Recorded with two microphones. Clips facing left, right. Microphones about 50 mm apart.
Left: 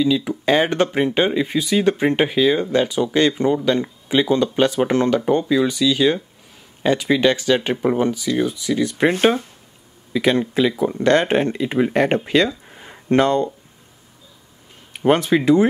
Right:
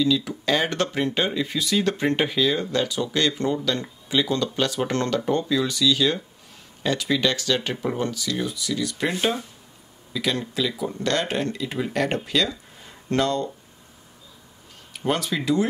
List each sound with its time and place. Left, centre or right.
0.0 s speech: left
10.1 s speech: left
14.9 s speech: left